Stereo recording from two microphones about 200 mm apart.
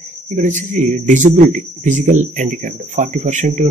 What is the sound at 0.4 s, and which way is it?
Speech, 40° right (ahead or behind).